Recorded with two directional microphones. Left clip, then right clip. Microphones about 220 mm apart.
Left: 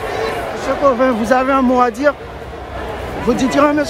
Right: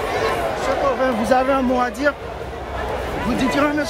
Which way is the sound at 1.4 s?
30° left (ahead or behind).